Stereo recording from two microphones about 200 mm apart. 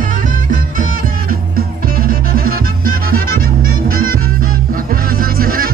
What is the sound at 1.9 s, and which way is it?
Music, 45° right (ahead or behind).